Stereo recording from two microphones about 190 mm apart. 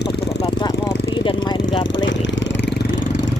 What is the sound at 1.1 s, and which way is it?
Speech, 25° left (ahead or behind).